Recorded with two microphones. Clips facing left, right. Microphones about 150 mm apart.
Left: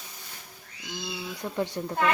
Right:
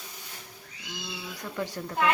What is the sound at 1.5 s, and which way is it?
Speech, 25° left (ahead or behind).